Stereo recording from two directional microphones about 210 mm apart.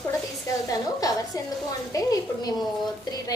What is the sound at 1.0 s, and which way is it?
A woman's voice, 15° left (ahead or behind).